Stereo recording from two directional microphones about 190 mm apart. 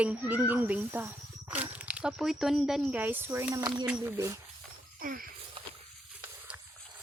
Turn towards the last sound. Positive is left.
turn(degrees=-50)  # may be behind; listen again after turning